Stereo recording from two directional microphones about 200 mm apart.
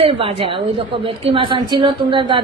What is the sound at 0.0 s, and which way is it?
A woman's voice, 25° right (ahead or behind).